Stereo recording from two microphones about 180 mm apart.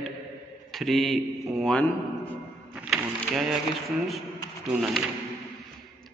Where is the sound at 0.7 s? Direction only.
Centre (ahead or behind).